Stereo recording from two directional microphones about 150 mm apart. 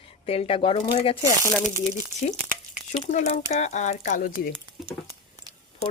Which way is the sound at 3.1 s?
50° left (ahead or behind).